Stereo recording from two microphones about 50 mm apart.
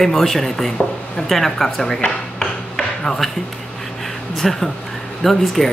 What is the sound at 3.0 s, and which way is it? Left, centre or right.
Speech, centre.